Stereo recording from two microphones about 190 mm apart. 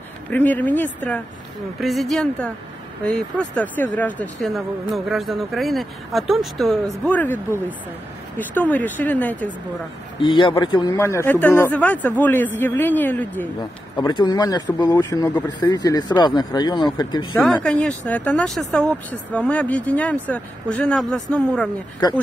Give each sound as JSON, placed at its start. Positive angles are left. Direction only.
{"t": 0.3, "sound": "speech", "side_deg": 10}
{"t": 8.4, "sound": "speech", "side_deg": 10}
{"t": 10.2, "sound": "speech", "side_deg": 25}
{"t": 13.9, "sound": "speech", "side_deg": 20}
{"t": 17.4, "sound": "speech", "side_deg": 5}